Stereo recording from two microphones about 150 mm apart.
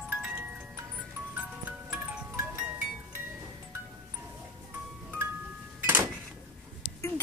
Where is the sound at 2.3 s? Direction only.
15° right (ahead or behind).